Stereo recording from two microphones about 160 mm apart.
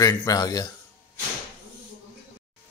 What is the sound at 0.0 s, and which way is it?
Speech, 25° left (ahead or behind).